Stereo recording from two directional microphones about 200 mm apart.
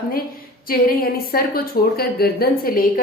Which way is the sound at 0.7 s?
50° left (ahead or behind).